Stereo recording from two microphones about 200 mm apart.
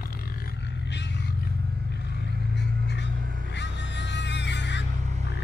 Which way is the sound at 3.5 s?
60° left (ahead or behind).